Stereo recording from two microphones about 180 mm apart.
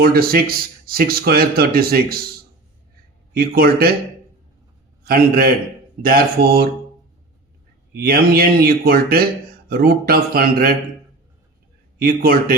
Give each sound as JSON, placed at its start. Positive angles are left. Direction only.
{"t": 0.0, "sound": "a man's voice", "side_deg": -55}
{"t": 3.3, "sound": "a man's voice", "side_deg": -55}
{"t": 5.0, "sound": "a man's voice", "side_deg": -55}
{"t": 7.9, "sound": "a man's voice", "side_deg": -55}
{"t": 11.9, "sound": "a man's voice", "side_deg": -55}